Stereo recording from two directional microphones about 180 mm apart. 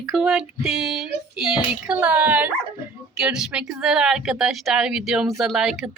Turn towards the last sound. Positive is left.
turn(degrees=0)  # may be behind; listen again after turning